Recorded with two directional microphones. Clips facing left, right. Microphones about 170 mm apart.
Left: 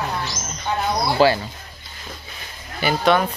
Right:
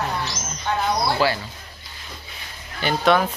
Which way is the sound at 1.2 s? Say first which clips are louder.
Left 8 dB; 30° left (ahead or behind).